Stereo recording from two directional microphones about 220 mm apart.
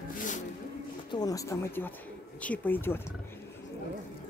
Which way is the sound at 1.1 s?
15° left (ahead or behind).